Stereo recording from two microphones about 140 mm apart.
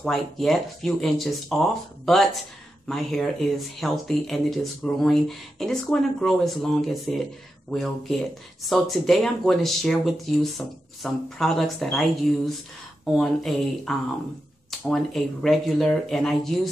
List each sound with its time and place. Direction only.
0.0 s speech: centre (ahead or behind)